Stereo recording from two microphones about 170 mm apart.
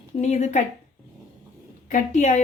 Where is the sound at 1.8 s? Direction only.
45° left (ahead or behind).